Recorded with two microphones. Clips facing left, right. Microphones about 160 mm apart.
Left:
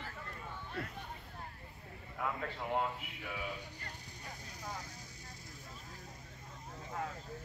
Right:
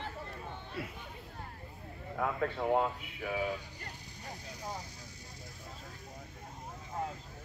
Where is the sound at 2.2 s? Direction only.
50° right (ahead or behind).